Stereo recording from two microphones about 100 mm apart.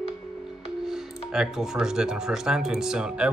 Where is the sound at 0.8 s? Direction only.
5° right (ahead or behind).